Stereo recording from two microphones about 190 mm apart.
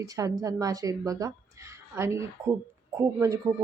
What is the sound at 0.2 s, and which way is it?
Speech, 20° right (ahead or behind).